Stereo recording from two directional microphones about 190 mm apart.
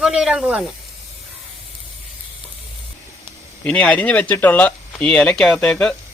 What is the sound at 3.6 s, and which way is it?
Speech, 5° left (ahead or behind).